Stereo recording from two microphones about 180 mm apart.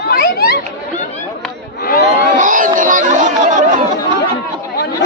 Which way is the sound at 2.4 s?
45° right (ahead or behind).